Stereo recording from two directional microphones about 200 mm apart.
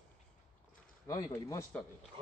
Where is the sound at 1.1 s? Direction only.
15° left (ahead or behind).